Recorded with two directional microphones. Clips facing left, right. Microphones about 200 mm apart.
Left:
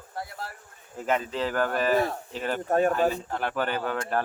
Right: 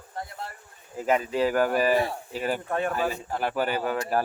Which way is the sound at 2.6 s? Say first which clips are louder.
Left 5 dB; 40° left (ahead or behind).